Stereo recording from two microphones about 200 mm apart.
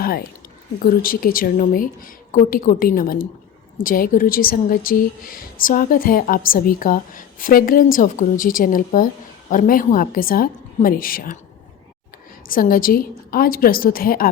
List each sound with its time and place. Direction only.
0.8 s a woman's voice: 45° left (ahead or behind)
12.5 s a woman's voice: 45° left (ahead or behind)